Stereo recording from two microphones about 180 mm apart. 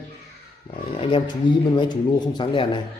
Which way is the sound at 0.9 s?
30° left (ahead or behind).